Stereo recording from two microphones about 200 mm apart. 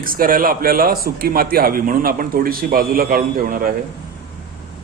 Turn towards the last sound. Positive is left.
turn(degrees=-45)  # may be behind; listen again after turning